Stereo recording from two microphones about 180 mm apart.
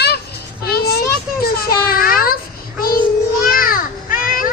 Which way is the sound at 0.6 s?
60° left (ahead or behind).